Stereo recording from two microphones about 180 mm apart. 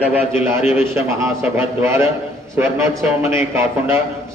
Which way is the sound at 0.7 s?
15° right (ahead or behind).